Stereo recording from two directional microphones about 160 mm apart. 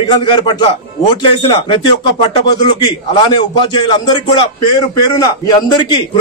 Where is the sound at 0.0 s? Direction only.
30° left (ahead or behind).